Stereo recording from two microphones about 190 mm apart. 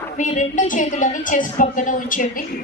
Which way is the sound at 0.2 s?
40° left (ahead or behind).